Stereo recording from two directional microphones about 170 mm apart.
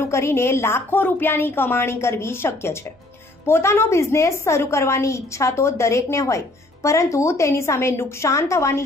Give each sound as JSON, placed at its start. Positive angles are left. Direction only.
{"t": 0.0, "sound": "a woman's voice", "side_deg": 15}